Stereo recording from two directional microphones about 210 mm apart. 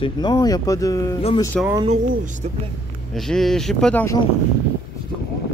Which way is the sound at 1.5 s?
5° left (ahead or behind).